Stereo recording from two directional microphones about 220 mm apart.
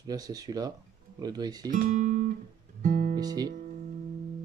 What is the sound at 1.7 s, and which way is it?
Speech, 35° right (ahead or behind).